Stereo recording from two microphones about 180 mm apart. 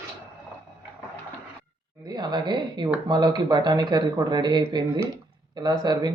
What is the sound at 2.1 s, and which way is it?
Speech, 25° right (ahead or behind).